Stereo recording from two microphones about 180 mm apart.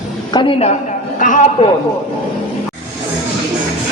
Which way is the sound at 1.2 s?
45° left (ahead or behind).